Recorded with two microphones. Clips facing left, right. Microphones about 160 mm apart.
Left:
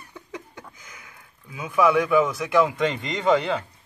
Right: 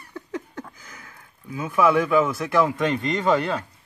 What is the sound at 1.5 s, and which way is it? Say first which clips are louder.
Speech: even; centre (ahead or behind).